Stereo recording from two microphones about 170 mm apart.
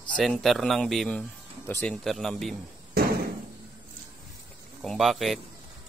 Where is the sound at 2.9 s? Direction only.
60° right (ahead or behind).